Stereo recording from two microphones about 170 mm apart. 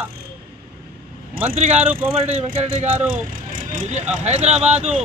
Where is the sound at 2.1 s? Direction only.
35° right (ahead or behind).